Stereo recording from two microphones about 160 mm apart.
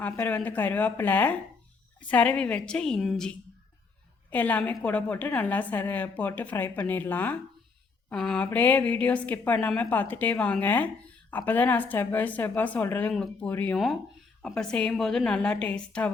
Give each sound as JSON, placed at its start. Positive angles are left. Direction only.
{"t": 0.0, "sound": "a woman's voice", "side_deg": 10}